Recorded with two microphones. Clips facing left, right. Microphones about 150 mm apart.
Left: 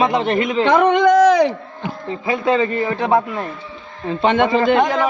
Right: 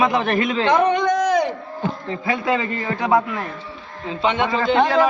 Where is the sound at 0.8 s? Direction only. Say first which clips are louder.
Left 6 dB; 90° left.